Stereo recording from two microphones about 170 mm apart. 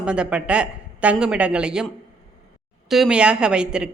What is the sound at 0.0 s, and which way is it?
Speech, 5° right (ahead or behind).